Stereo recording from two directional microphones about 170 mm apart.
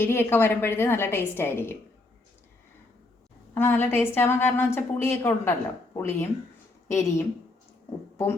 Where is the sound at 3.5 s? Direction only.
10° left (ahead or behind).